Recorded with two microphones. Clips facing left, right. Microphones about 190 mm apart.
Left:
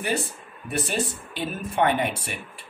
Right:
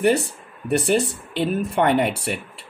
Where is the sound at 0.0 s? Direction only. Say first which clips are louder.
Right 9 dB; 70° right (ahead or behind).